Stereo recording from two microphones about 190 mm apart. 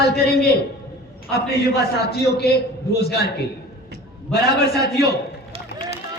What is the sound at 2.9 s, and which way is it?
Speech, 60° left (ahead or behind).